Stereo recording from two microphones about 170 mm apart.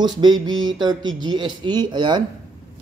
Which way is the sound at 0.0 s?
25° right (ahead or behind).